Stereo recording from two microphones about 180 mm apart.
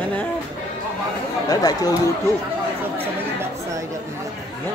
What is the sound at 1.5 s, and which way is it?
Speech, 20° left (ahead or behind).